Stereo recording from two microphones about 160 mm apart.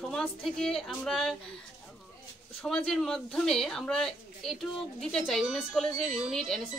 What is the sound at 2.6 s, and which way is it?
A woman's voice, 5° left (ahead or behind).